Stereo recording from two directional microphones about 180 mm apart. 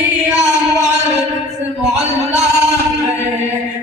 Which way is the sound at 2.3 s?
40° right (ahead or behind).